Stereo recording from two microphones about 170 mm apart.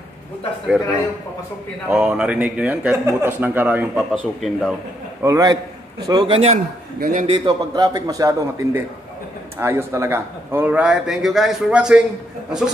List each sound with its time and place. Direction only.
1.9 s a man's voice: 5° right (ahead or behind)
5.2 s a man's voice: 20° right (ahead or behind); by 6.6 s 35° right (ahead or behind)
7.0 s a man's voice: 55° right (ahead or behind)
7.2 s a man's voice: 25° right (ahead or behind); by 12.0 s 5° right (ahead or behind)